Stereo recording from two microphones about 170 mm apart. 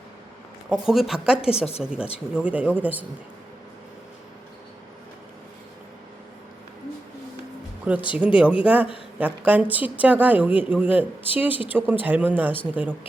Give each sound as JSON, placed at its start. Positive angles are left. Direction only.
{"t": 0.7, "sound": "speech", "side_deg": 0}
{"t": 1.5, "sound": "a woman's voice", "side_deg": 35}
{"t": 1.8, "sound": "a woman's voice", "side_deg": -5}
{"t": 7.9, "sound": "a woman's voice", "side_deg": -10}